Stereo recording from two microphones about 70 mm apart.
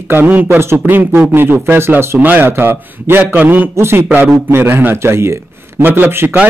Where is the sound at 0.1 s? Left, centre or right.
Right.